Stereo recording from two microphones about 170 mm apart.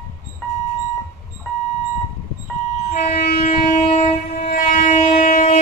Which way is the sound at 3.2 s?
60° left (ahead or behind).